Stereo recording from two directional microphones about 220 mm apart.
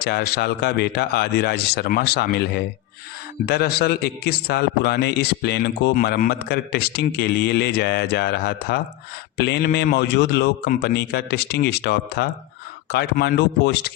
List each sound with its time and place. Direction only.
0.0 s a man's voice: 45° left (ahead or behind)